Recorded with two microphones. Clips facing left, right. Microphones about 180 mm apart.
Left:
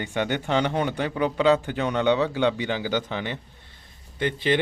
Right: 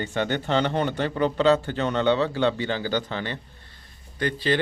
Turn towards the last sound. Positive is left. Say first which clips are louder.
# left 1 dB
turn(degrees=20)  # may be behind; listen again after turning